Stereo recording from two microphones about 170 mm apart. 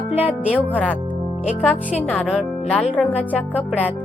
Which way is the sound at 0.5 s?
10° left (ahead or behind).